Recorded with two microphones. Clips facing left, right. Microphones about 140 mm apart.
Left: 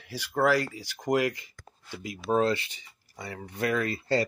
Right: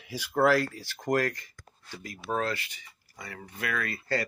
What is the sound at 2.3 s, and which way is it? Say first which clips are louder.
Speech: left 6 dB; 30° left (ahead or behind).